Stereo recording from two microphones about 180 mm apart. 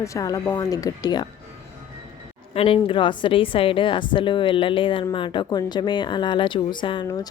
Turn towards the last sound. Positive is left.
turn(degrees=20)  # may be behind; listen again after turning